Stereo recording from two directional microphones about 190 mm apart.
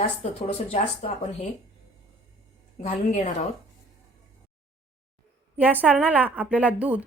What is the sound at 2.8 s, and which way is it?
Speech, 40° left (ahead or behind).